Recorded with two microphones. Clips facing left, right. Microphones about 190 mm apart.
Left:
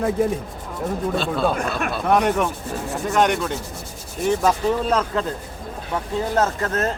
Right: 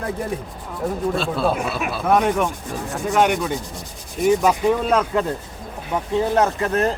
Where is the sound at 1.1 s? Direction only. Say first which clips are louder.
Even; centre (ahead or behind).